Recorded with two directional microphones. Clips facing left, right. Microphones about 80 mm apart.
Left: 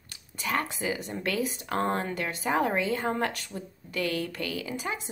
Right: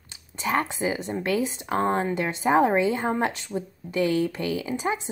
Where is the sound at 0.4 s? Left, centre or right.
Right.